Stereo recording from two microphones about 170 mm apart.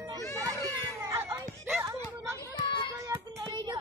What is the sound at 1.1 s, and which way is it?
Music, 15° right (ahead or behind).